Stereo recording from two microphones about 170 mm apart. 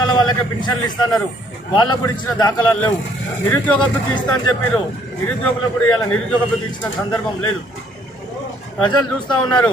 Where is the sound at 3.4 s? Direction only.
10° left (ahead or behind).